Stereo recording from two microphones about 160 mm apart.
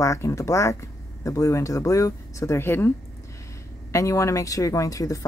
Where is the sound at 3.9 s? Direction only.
20° left (ahead or behind).